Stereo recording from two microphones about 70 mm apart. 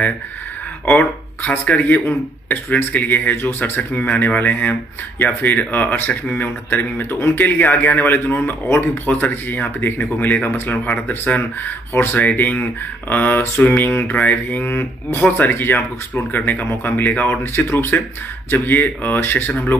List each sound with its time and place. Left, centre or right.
0.8 s speech: left
11.9 s speech: left
12.2 s speech: left
18.7 s speech: left